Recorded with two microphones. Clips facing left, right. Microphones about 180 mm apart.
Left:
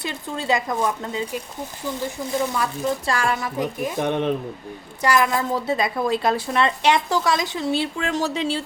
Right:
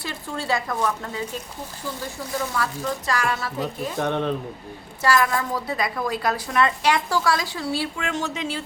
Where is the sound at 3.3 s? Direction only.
15° left (ahead or behind).